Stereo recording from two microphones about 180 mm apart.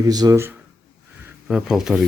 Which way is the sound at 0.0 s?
20° right (ahead or behind).